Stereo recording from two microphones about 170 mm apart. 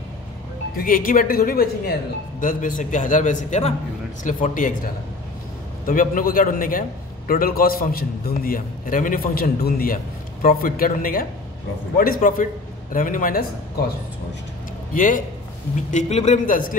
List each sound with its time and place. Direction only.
0.7 s a man's voice: 55° left (ahead or behind)
5.9 s a man's voice: 55° left (ahead or behind)
15.0 s a man's voice: 50° left (ahead or behind)